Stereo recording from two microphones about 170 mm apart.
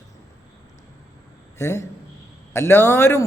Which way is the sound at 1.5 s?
15° left (ahead or behind).